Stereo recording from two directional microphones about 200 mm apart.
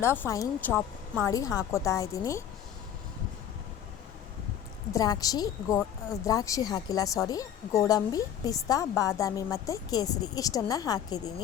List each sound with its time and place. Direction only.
0.0 s speech: 10° left (ahead or behind)
4.9 s speech: 20° left (ahead or behind)